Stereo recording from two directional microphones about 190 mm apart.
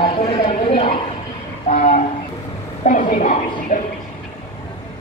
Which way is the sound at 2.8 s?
40° left (ahead or behind).